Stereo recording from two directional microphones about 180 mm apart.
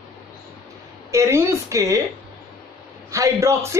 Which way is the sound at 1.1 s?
15° right (ahead or behind).